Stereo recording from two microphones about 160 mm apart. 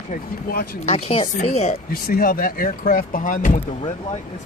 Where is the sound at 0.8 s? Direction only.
40° left (ahead or behind).